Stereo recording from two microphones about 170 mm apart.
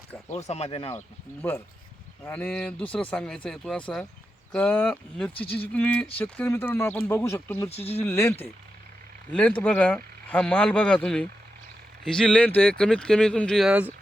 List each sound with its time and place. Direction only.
0.3 s speech: 40° left (ahead or behind)
1.4 s speech: 10° left (ahead or behind)
7.7 s speech: 35° left (ahead or behind)
7.9 s speech: 15° left (ahead or behind); by 13.9 s 5° right (ahead or behind)